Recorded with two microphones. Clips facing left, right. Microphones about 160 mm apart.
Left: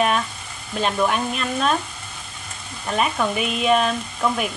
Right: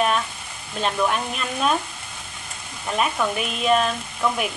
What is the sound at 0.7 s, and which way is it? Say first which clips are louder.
Speech: left 2 dB; centre (ahead or behind).